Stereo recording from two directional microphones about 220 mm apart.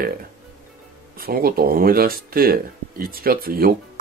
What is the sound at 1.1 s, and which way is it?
Speech, 40° right (ahead or behind).